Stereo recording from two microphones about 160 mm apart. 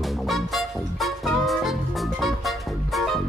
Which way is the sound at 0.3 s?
Centre (ahead or behind).